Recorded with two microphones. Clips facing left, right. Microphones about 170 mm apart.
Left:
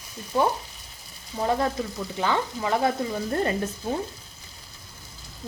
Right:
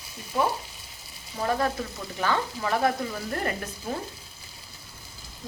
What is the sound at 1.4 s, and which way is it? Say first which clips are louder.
Stir: left 2 dB; 20° left (ahead or behind).